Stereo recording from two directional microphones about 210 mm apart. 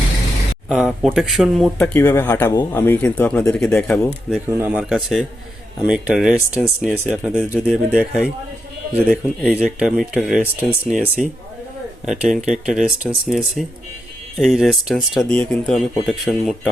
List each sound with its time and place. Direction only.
0.7 s speech: centre (ahead or behind)
4.4 s speech: 10° right (ahead or behind)